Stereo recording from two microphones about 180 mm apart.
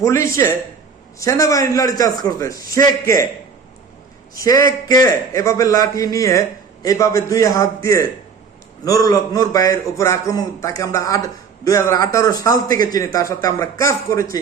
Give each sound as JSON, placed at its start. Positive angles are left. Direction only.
{"t": 0.0, "sound": "a man's voice", "side_deg": 15}
{"t": 4.4, "sound": "a man's voice", "side_deg": 20}
{"t": 8.8, "sound": "a man's voice", "side_deg": 20}